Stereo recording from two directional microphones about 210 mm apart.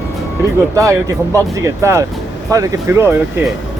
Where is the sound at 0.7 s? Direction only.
15° right (ahead or behind).